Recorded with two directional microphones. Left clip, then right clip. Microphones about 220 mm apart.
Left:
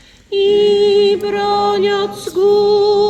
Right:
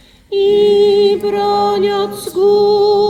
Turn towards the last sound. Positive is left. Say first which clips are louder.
# right 1 dB
turn(degrees=-55)  # may be behind; listen again after turning